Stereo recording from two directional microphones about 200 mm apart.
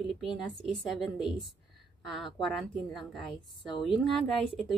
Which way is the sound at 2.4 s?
Centre (ahead or behind).